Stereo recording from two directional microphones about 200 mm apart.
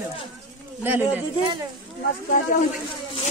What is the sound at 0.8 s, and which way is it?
Speech, 10° right (ahead or behind).